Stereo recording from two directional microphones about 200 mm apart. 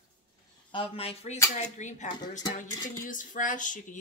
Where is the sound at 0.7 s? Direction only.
25° left (ahead or behind).